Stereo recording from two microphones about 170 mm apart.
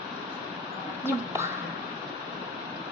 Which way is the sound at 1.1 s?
15° right (ahead or behind).